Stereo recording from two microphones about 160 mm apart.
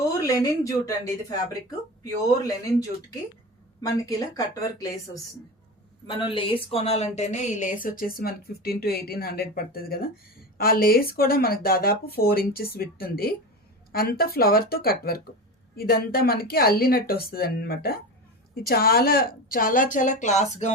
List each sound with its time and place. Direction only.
0.3 s a woman's voice: 20° left (ahead or behind)
3.8 s a woman's voice: 20° left (ahead or behind)
6.1 s a woman's voice: 35° left (ahead or behind)